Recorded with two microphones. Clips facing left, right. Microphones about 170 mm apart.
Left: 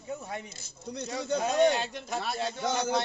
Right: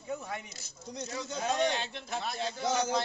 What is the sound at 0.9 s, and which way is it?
Speech, 60° left (ahead or behind).